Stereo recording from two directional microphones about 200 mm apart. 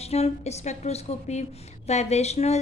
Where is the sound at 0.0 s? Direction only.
30° left (ahead or behind).